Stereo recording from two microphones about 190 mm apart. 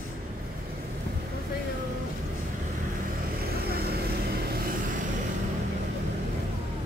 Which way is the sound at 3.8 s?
55° right (ahead or behind).